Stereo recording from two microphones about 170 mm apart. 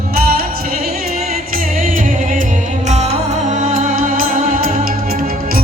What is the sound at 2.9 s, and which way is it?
Music, 40° right (ahead or behind).